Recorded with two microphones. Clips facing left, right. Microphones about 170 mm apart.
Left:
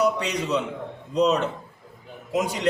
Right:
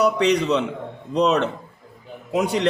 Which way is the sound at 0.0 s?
70° right (ahead or behind).